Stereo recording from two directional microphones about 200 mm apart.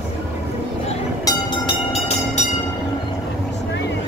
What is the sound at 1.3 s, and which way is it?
Train, 30° left (ahead or behind).